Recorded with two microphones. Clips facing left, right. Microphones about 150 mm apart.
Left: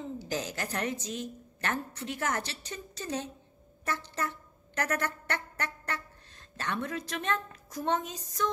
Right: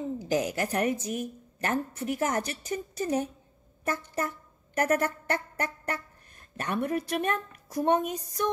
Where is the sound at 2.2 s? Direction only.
25° right (ahead or behind).